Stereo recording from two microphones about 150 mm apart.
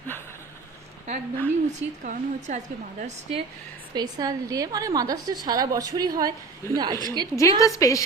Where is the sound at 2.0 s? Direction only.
55° right (ahead or behind).